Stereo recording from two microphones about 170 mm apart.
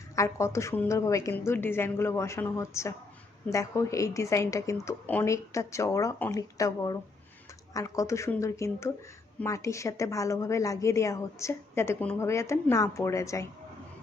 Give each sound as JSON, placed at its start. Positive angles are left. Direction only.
{"t": 0.2, "sound": "a woman's voice", "side_deg": 15}